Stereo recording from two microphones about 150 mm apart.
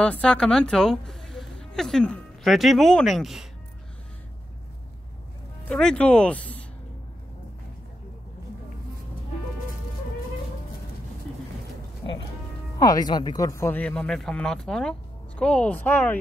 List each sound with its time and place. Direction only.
0.0 s a woman's voice: 5° left (ahead or behind)
5.7 s speech: 5° left (ahead or behind)
12.7 s speech: 25° left (ahead or behind)